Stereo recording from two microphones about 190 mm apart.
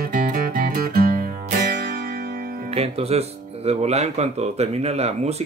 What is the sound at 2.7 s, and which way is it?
Speech, 30° right (ahead or behind).